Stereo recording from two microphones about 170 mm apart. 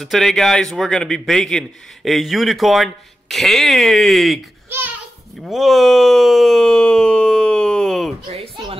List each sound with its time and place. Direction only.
0.0 s a man's voice: centre (ahead or behind)
4.6 s a sound: 10° right (ahead or behind)
5.4 s speech: centre (ahead or behind)
8.3 s speech: 30° right (ahead or behind)